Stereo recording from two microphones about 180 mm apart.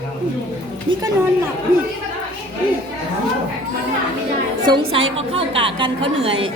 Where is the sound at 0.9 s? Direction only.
30° right (ahead or behind).